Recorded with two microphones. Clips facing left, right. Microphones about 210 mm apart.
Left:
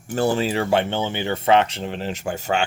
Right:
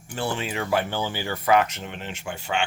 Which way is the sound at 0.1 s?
40° left (ahead or behind).